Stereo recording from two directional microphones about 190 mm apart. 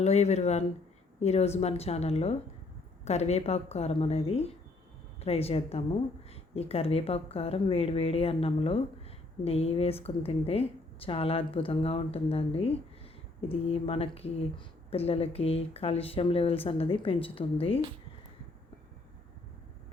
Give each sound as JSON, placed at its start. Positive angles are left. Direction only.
{"t": 0.0, "sound": "speech", "side_deg": 35}